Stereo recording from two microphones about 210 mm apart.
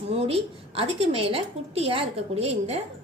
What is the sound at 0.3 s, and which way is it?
A woman's voice, 25° right (ahead or behind).